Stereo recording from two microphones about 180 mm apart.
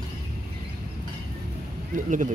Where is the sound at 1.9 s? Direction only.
45° right (ahead or behind).